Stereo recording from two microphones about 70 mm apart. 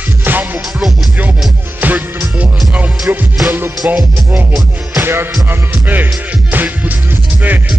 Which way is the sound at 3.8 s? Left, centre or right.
Centre.